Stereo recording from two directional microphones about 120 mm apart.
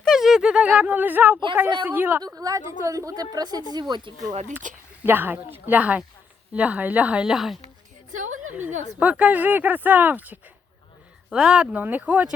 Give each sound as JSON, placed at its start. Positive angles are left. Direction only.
{"t": 0.0, "sound": "a sound", "side_deg": 0}
{"t": 1.9, "sound": "speech", "side_deg": -15}
{"t": 2.2, "sound": "a woman's voice", "side_deg": -30}
{"t": 4.6, "sound": "speech", "side_deg": -90}
{"t": 5.0, "sound": "speech", "side_deg": -15}
{"t": 8.1, "sound": "a sound", "side_deg": -90}
{"t": 9.0, "sound": "speech", "side_deg": -10}